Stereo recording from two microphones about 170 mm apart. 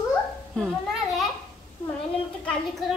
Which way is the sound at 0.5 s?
Centre (ahead or behind).